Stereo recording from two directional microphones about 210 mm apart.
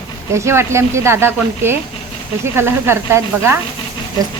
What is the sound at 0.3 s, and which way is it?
A woman's voice, 15° right (ahead or behind).